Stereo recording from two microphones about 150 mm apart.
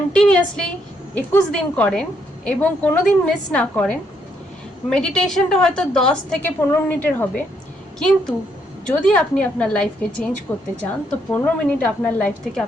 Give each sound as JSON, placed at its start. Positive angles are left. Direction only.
{"t": 0.1, "sound": "a woman's voice", "side_deg": 5}
{"t": 10.5, "sound": "a woman's voice", "side_deg": 20}